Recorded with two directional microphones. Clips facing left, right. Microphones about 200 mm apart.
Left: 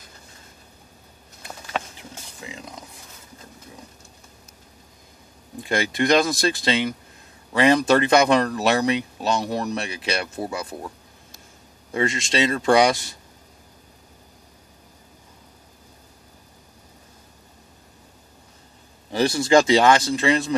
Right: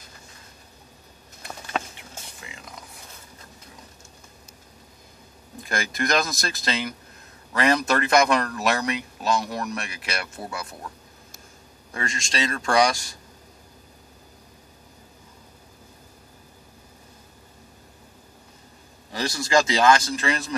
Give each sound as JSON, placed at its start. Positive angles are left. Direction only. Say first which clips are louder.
{"t": 2.0, "sound": "a sound", "louder": "left 3 dB", "side_deg": 30}
{"t": 5.7, "sound": "speech", "louder": "left 6 dB", "side_deg": 25}
{"t": 11.9, "sound": "speech", "louder": "left 8 dB", "side_deg": 20}
{"t": 19.1, "sound": "speech", "louder": "left 5 dB", "side_deg": 25}